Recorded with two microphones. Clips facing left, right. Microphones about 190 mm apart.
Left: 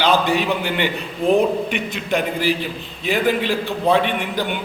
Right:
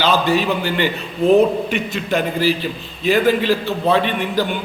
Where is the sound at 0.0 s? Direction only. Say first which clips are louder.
Right 1 dB; 15° left (ahead or behind).